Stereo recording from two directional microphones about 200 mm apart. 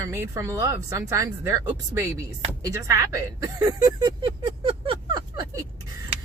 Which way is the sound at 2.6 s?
15° right (ahead or behind).